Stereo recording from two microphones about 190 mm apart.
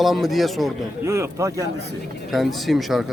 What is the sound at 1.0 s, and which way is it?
Speech, 15° right (ahead or behind).